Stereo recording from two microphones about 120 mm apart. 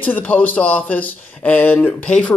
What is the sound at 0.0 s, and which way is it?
Speech, 15° left (ahead or behind).